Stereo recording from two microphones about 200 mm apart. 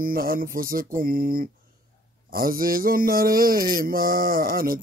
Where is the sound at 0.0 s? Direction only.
45° right (ahead or behind).